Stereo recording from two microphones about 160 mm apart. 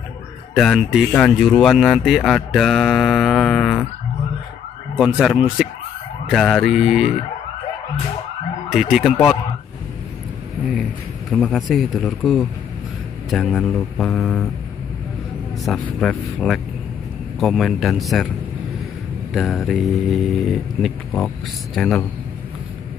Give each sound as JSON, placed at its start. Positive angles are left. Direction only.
{"t": 0.6, "sound": "speech", "side_deg": 0}
{"t": 4.9, "sound": "speech", "side_deg": -5}
{"t": 8.6, "sound": "speech", "side_deg": -5}
{"t": 11.3, "sound": "speech", "side_deg": 0}
{"t": 15.6, "sound": "speech", "side_deg": 0}
{"t": 19.3, "sound": "speech", "side_deg": 0}